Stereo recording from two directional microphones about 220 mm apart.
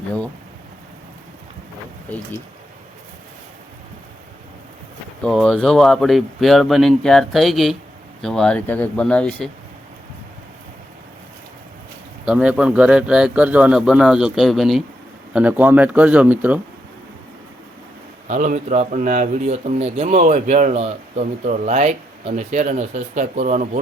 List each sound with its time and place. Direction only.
5.2 s a man's voice: centre (ahead or behind)
12.2 s a man's voice: 5° right (ahead or behind)
18.3 s speech: 35° right (ahead or behind)